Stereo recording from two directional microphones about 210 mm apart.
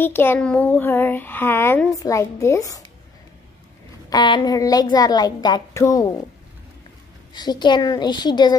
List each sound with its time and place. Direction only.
0.0 s a child's voice: 10° left (ahead or behind)
4.1 s a woman's voice: 20° left (ahead or behind)
7.3 s a woman's voice: 20° left (ahead or behind)